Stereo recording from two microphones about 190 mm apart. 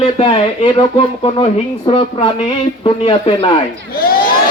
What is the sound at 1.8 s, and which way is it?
Speech, 30° left (ahead or behind).